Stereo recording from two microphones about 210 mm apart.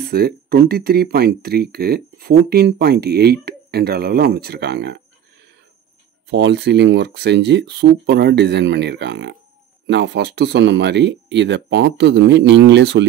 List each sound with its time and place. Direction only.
0.0 s speech: 50° right (ahead or behind)
6.2 s speech: 55° right (ahead or behind)